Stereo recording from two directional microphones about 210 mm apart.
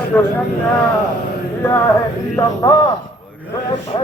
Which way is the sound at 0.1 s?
5° left (ahead or behind).